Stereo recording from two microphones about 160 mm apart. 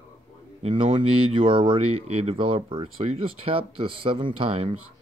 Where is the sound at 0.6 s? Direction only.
30° right (ahead or behind).